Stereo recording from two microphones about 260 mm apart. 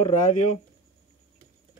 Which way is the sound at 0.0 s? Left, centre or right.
Left.